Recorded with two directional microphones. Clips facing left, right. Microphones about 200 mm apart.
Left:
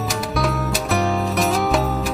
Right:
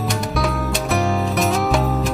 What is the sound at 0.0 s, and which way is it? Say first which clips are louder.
Music: right 1 dB; centre (ahead or behind).